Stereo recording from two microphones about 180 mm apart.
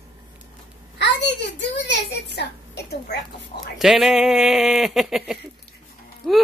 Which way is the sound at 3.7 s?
Centre (ahead or behind).